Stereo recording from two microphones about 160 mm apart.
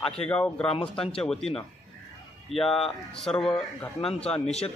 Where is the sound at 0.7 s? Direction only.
35° left (ahead or behind).